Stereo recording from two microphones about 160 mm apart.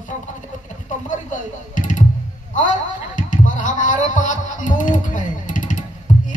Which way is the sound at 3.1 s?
55° left (ahead or behind).